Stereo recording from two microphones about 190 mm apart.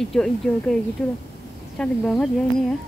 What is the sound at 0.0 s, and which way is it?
Speech, 5° left (ahead or behind).